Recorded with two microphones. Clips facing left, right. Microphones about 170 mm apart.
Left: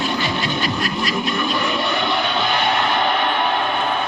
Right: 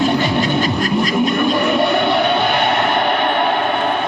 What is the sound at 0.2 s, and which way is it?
Music, 45° right (ahead or behind).